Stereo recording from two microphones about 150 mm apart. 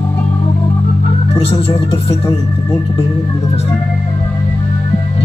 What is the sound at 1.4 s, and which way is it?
Speech, 40° left (ahead or behind).